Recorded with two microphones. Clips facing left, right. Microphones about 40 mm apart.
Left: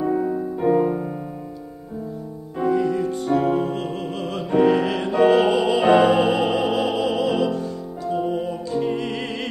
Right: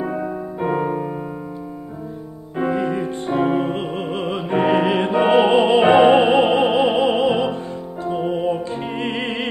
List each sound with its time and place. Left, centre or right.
0.0 s music: right
2.5 s music: right